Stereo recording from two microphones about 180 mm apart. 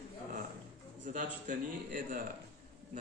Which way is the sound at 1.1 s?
45° right (ahead or behind).